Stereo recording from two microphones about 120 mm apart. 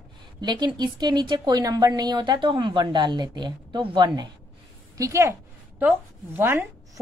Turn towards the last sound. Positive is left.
turn(degrees=-15)  # may be behind; listen again after turning